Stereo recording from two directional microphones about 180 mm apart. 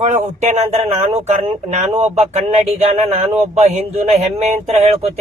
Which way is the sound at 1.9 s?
15° right (ahead or behind).